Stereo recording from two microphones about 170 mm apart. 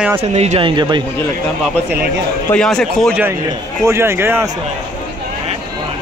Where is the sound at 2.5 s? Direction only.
5° left (ahead or behind).